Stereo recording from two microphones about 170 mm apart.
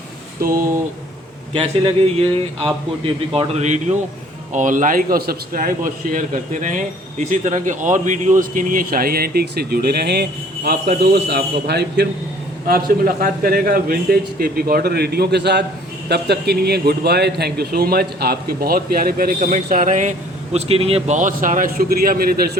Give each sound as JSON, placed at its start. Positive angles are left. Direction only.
{"t": 0.4, "sound": "a man's voice", "side_deg": -55}
{"t": 1.5, "sound": "a man's voice", "side_deg": -35}
{"t": 12.6, "sound": "a man's voice", "side_deg": -60}